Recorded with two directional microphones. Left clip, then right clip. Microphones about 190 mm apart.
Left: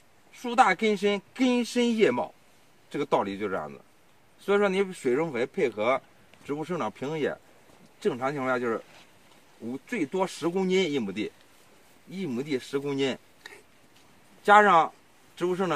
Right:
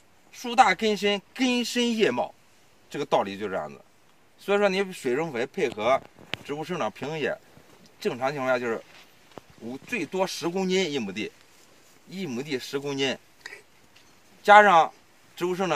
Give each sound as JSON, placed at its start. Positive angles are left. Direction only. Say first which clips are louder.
{"t": 0.4, "sound": "speech", "louder": "right 2 dB", "side_deg": -10}
{"t": 14.4, "sound": "speech", "louder": "right 3 dB", "side_deg": -10}